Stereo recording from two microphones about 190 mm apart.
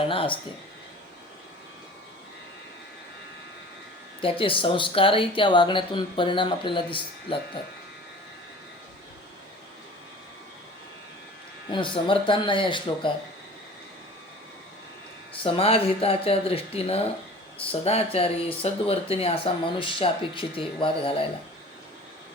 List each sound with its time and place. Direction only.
0.0 s speech: 30° left (ahead or behind)
4.2 s speech: 30° left (ahead or behind)
11.7 s speech: 25° left (ahead or behind)
15.4 s speech: 30° left (ahead or behind)